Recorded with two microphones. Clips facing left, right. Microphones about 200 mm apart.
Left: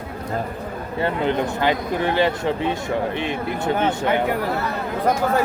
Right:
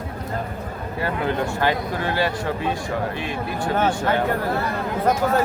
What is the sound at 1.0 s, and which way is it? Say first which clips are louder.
Speech: left 2 dB; 20° left (ahead or behind).